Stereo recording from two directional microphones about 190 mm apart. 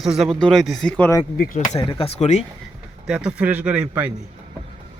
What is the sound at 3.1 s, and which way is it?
Speech, 5° right (ahead or behind).